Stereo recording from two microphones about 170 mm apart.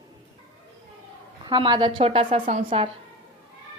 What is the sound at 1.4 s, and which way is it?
Speech, 25° right (ahead or behind).